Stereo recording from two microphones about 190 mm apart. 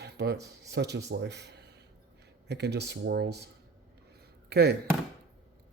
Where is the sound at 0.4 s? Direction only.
60° right (ahead or behind).